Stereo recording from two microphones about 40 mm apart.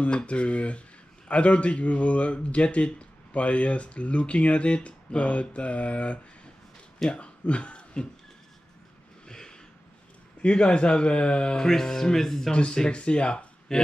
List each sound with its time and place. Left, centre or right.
0.0 s speech: left
9.3 s a sound: centre
10.4 s a man's voice: left
11.6 s speech: centre
12.5 s speech: left